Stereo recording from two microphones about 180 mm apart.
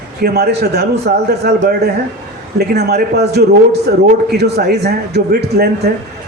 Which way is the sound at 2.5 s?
65° right (ahead or behind).